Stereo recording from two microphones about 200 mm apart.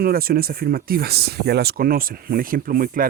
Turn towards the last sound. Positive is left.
turn(degrees=-45)  # may be behind; listen again after turning